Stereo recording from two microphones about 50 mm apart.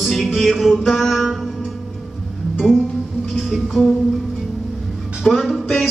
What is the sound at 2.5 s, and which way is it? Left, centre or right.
Music, centre.